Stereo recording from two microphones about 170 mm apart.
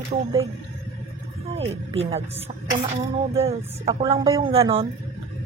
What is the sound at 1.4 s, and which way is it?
Speech, 35° right (ahead or behind).